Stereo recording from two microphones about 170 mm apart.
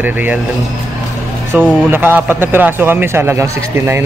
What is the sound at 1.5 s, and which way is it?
Speech, 10° right (ahead or behind).